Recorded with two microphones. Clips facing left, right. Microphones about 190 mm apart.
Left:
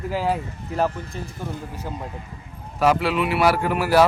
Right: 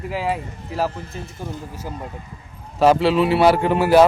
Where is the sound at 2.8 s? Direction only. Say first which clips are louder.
Right 5 dB; 30° right (ahead or behind).